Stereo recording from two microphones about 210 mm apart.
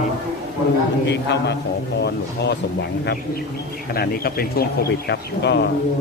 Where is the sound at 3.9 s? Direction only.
45° left (ahead or behind).